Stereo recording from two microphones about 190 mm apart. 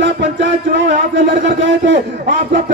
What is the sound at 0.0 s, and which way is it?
A man's voice, 65° right (ahead or behind).